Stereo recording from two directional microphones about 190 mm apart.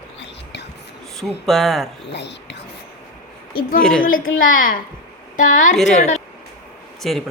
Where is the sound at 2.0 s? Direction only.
65° left (ahead or behind).